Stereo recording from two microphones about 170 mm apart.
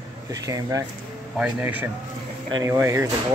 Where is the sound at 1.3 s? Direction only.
5° right (ahead or behind).